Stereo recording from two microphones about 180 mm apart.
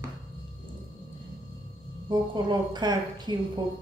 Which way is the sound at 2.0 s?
25° right (ahead or behind).